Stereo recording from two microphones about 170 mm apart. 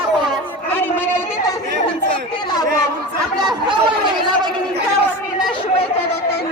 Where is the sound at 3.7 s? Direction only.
25° right (ahead or behind).